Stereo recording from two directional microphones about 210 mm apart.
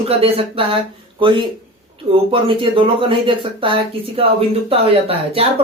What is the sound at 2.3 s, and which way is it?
Speech, 25° right (ahead or behind).